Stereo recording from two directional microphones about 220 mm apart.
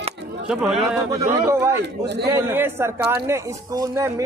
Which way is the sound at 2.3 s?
10° right (ahead or behind).